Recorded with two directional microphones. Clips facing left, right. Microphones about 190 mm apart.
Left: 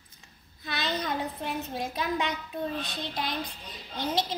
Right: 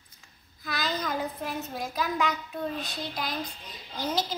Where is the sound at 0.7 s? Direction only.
25° left (ahead or behind).